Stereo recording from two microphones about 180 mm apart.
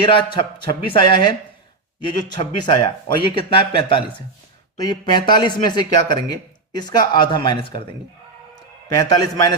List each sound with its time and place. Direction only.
0.0 s a man's voice: 25° left (ahead or behind)
9.0 s a man's voice: 20° left (ahead or behind)